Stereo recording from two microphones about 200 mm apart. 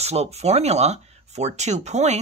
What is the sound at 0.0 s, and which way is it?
Speech, 30° right (ahead or behind).